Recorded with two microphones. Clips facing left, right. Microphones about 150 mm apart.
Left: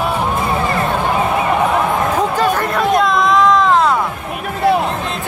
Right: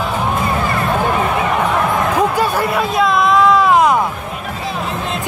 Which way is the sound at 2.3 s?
10° right (ahead or behind).